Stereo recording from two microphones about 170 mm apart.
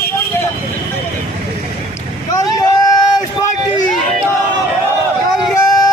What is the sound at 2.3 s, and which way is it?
Vehicle, 20° left (ahead or behind).